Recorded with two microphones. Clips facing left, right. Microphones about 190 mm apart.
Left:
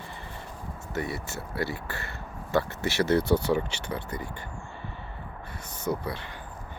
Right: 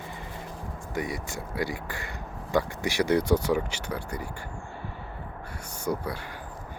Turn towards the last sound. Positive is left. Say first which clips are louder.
# even
turn(degrees=-10)  # may be behind; listen again after turning